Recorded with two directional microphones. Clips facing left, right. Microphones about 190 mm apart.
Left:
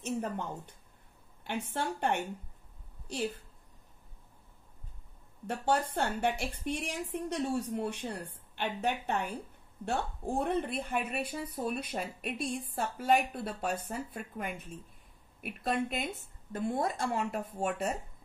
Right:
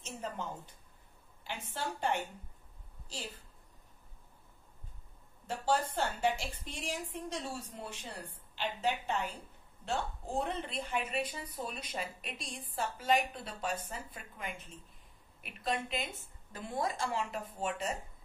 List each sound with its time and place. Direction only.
0.0 s a woman's voice: 60° left (ahead or behind)
5.5 s speech: 60° left (ahead or behind)